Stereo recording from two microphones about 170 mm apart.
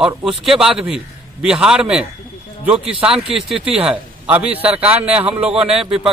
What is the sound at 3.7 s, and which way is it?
Speech, 35° right (ahead or behind).